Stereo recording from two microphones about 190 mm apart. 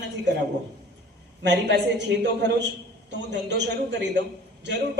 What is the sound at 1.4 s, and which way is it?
A man's voice, 65° right (ahead or behind).